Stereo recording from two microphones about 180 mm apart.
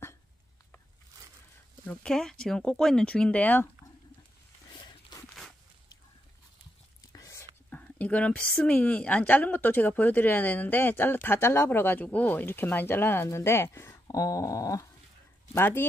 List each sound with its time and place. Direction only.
1.9 s speech: 5° left (ahead or behind)
4.6 s a sound: 25° left (ahead or behind)
7.0 s whispering: 15° left (ahead or behind)
7.7 s a woman's voice: 10° left (ahead or behind)